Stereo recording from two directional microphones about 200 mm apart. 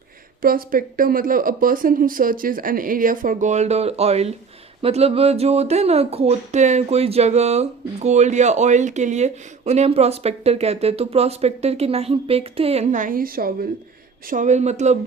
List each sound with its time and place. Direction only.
0.4 s speech: 45° right (ahead or behind)